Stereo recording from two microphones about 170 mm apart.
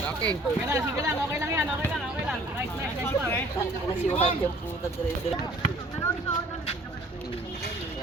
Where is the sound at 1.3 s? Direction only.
15° right (ahead or behind).